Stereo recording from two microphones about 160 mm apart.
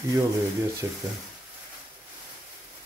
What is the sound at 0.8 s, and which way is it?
Speech, 20° right (ahead or behind).